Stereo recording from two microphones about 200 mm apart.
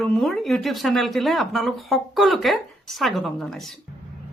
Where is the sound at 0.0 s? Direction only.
Centre (ahead or behind).